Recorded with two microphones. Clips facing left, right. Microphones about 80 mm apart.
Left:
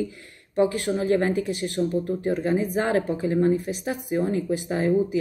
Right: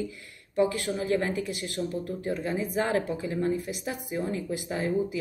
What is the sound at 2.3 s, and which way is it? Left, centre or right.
Speech, left.